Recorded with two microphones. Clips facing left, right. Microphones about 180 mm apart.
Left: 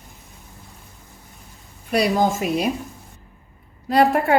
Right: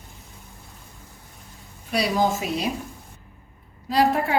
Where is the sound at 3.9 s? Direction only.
60° left (ahead or behind).